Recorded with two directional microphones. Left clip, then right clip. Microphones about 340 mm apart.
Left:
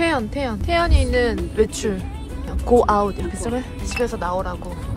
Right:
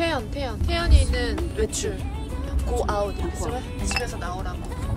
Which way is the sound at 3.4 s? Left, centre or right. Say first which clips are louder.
Left 6 dB; centre.